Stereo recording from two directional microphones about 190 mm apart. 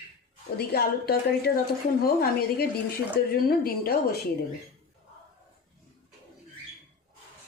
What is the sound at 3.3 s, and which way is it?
Speech, 50° left (ahead or behind).